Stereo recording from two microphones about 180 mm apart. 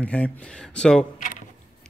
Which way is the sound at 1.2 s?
45° left (ahead or behind).